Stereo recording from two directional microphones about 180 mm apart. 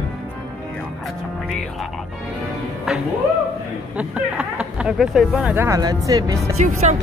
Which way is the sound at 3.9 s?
5° right (ahead or behind).